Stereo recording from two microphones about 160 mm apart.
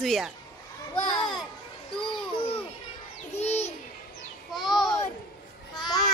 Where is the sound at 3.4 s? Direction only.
40° left (ahead or behind).